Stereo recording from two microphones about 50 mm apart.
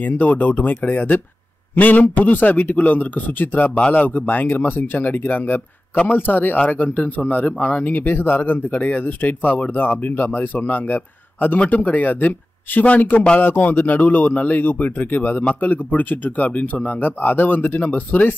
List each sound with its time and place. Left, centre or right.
0.0 s speech: left
8.0 s speech: left